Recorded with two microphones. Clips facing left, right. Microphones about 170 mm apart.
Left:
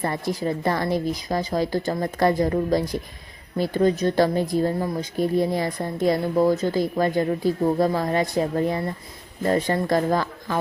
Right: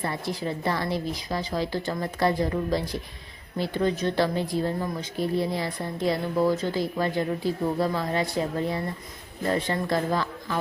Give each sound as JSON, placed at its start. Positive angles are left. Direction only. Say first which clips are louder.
{"t": 0.0, "sound": "speech", "louder": "left 4 dB", "side_deg": 45}